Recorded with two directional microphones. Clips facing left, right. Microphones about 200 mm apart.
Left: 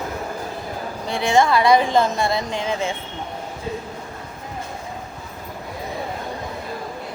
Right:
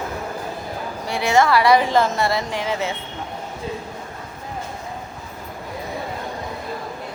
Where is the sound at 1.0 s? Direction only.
15° left (ahead or behind).